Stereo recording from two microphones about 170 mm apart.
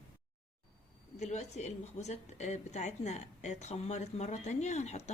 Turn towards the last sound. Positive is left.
turn(degrees=40)  # may be behind; listen again after turning